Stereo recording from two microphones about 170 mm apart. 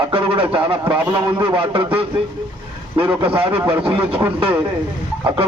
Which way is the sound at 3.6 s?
10° right (ahead or behind).